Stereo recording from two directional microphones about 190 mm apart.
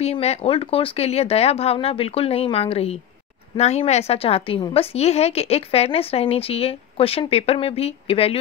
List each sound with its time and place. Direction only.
0.0 s a woman's voice: 35° left (ahead or behind)